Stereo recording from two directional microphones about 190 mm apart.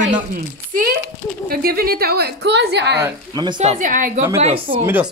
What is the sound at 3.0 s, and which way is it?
Speech, 20° right (ahead or behind).